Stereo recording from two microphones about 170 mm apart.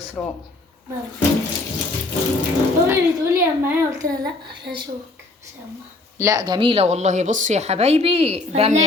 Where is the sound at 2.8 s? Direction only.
15° right (ahead or behind).